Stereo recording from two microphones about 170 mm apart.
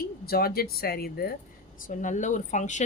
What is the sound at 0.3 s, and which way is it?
Speech, 65° left (ahead or behind).